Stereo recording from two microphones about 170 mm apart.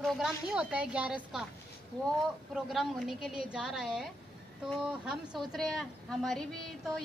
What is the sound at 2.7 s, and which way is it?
Speech, centre (ahead or behind).